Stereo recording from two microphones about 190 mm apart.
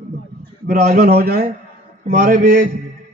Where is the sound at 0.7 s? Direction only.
35° right (ahead or behind).